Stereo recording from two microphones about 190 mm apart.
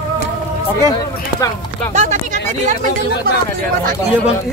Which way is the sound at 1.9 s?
40° right (ahead or behind).